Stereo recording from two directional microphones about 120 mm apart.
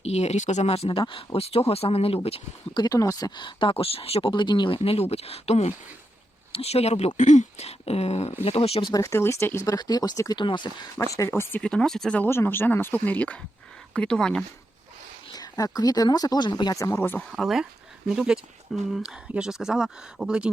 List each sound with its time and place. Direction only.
0.0 s speech: 65° left (ahead or behind)
2.7 s speech: 30° left (ahead or behind); by 7.1 s 60° left (ahead or behind)
7.2 s speech: 85° left; by 8.9 s 55° left (ahead or behind)
8.9 s speech: 25° left (ahead or behind)
10.9 s speech: 25° left (ahead or behind)
11.6 s speech: 5° left (ahead or behind)
12.2 s speech: 20° left (ahead or behind)
15.3 s speech: 30° left (ahead or behind)
16.7 s speech: 25° left (ahead or behind)
17.3 s speech: centre (ahead or behind)